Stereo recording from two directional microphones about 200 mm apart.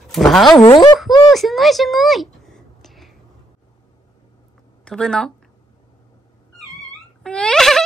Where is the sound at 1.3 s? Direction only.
Centre (ahead or behind).